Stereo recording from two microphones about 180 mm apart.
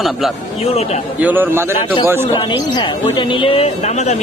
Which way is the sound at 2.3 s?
25° left (ahead or behind).